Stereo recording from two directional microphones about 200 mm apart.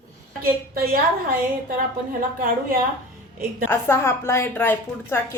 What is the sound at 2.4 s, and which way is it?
Speech, 45° right (ahead or behind).